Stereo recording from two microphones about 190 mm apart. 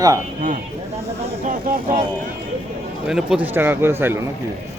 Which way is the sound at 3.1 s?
5° right (ahead or behind).